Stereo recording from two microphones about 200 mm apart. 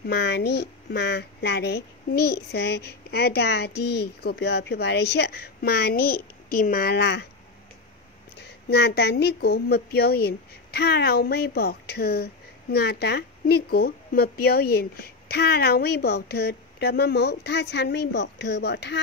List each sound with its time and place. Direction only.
0.0 s speech: 55° left (ahead or behind)
8.4 s speech: 55° left (ahead or behind)